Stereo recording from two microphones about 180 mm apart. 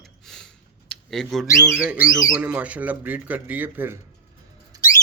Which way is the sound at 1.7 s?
5° right (ahead or behind).